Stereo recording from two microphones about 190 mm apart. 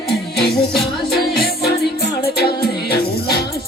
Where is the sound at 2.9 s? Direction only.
55° left (ahead or behind).